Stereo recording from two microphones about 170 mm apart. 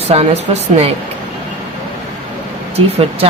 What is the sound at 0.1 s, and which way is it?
Speech, 35° right (ahead or behind).